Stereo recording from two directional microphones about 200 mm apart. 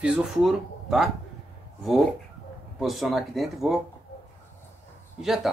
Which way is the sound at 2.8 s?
Centre (ahead or behind).